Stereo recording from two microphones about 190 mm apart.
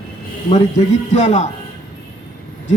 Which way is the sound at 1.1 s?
35° left (ahead or behind).